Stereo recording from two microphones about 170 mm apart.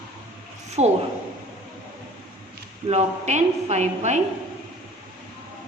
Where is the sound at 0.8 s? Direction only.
40° right (ahead or behind).